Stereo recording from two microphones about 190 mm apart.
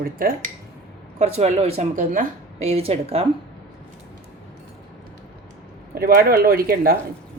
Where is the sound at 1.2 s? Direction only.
35° right (ahead or behind).